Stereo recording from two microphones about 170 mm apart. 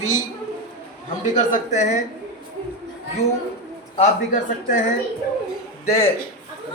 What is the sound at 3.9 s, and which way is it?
Speech, 45° left (ahead or behind).